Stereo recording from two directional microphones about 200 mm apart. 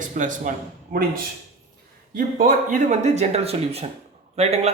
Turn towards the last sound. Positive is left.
turn(degrees=-30)  # may be behind; listen again after turning